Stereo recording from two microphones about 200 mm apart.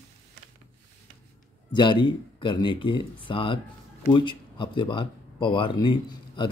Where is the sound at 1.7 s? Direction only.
25° left (ahead or behind).